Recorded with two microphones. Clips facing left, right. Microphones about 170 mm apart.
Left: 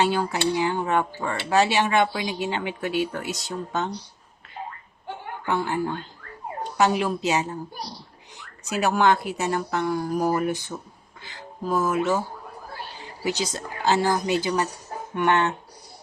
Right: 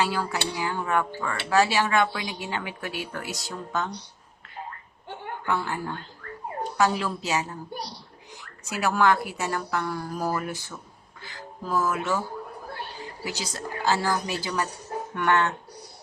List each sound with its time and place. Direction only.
0.0 s cutlery: 25° left (ahead or behind)
5.5 s cutlery: 20° left (ahead or behind)
8.7 s cutlery: 20° left (ahead or behind)
11.2 s speech: 20° left (ahead or behind)
13.2 s cutlery: 20° left (ahead or behind)